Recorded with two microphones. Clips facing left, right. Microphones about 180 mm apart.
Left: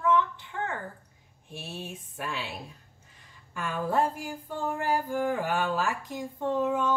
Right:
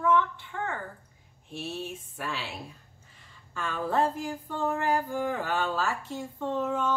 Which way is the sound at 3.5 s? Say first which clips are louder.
Even; 10° left (ahead or behind).